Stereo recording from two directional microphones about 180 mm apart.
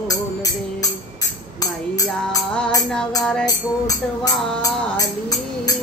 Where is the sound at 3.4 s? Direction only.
20° left (ahead or behind).